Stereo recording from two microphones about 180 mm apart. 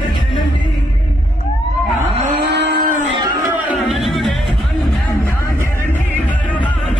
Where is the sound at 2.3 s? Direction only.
70° right (ahead or behind).